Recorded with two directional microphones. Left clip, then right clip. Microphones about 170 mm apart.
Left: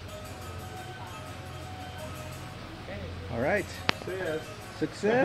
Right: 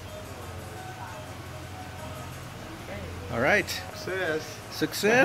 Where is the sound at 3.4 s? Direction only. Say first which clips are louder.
Right 5 dB; 20° right (ahead or behind).